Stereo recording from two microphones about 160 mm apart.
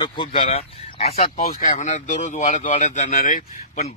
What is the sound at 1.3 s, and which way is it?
Speech, 60° left (ahead or behind).